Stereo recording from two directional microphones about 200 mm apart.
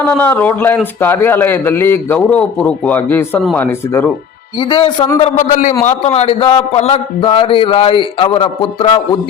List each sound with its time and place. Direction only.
0.0 s a man's voice: 10° left (ahead or behind)
4.7 s a man's voice: 25° left (ahead or behind)
5.2 s a man's voice: 40° left (ahead or behind)